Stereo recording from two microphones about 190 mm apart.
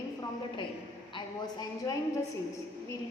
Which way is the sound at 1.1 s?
20° left (ahead or behind).